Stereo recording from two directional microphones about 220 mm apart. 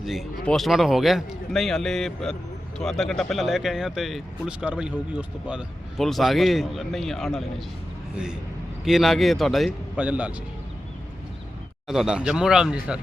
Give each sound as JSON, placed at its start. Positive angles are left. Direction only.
{"t": 0.0, "sound": "speech", "side_deg": 0}
{"t": 11.9, "sound": "speech", "side_deg": -5}